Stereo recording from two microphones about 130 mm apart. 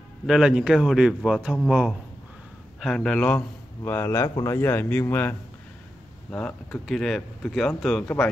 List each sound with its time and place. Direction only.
0.3 s speech: 5° right (ahead or behind)
2.8 s speech: 5° left (ahead or behind)
3.3 s a man's voice: 20° left (ahead or behind)
6.3 s speech: 10° left (ahead or behind)